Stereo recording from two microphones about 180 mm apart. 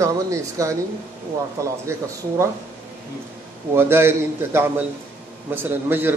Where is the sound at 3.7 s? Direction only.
15° right (ahead or behind).